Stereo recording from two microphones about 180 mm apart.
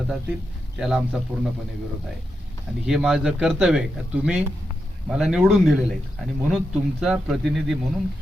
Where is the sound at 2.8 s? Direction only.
5° right (ahead or behind).